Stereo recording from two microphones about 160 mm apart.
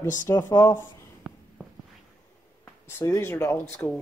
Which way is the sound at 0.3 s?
20° left (ahead or behind).